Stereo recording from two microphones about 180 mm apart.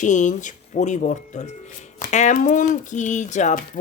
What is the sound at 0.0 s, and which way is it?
Speech, 40° left (ahead or behind).